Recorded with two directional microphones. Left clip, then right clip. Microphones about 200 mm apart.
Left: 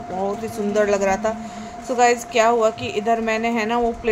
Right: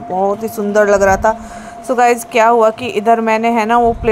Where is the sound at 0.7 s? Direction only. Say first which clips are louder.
Right 9 dB; 25° right (ahead or behind).